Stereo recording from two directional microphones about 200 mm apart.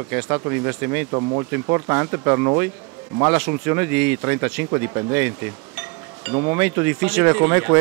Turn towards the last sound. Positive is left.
turn(degrees=-15)  # may be behind; listen again after turning